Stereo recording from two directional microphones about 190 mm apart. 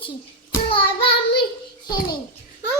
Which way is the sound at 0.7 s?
25° left (ahead or behind).